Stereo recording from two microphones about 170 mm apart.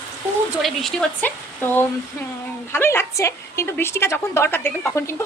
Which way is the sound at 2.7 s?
15° left (ahead or behind).